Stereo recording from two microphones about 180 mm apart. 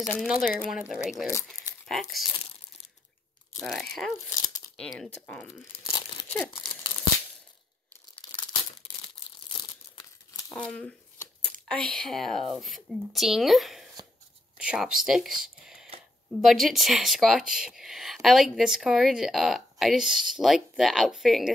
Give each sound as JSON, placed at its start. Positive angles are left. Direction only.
{"t": 0.0, "sound": "speech", "side_deg": 10}
{"t": 0.3, "sound": "speech", "side_deg": -5}
{"t": 3.5, "sound": "speech", "side_deg": 0}
{"t": 5.9, "sound": "crumpling", "side_deg": 25}
{"t": 8.2, "sound": "tearing", "side_deg": 25}
{"t": 9.0, "sound": "crumpling", "side_deg": 25}
{"t": 10.5, "sound": "speech", "side_deg": 5}